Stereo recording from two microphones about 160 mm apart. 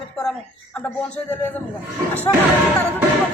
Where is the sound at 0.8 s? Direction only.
10° left (ahead or behind).